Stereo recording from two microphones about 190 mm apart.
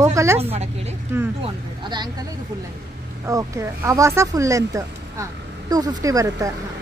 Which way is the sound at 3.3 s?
15° right (ahead or behind).